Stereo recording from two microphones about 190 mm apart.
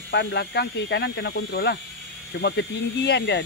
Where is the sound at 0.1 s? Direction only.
65° left (ahead or behind).